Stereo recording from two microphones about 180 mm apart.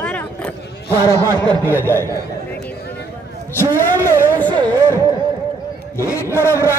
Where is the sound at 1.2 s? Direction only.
25° right (ahead or behind).